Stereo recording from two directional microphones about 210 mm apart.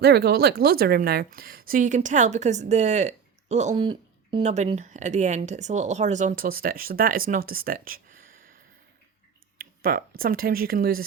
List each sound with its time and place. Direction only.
0.0 s a woman's voice: 50° right (ahead or behind)
9.6 s speech: 45° right (ahead or behind)